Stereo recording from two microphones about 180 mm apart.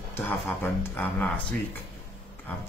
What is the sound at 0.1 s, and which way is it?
Speech, 10° left (ahead or behind).